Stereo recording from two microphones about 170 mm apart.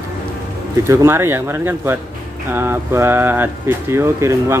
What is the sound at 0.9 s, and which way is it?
Speech, 15° right (ahead or behind).